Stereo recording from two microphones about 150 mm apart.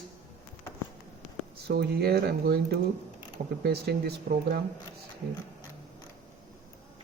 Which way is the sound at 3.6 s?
90° right.